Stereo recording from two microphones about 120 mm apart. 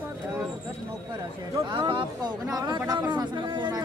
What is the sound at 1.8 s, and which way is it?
Speech, 45° right (ahead or behind).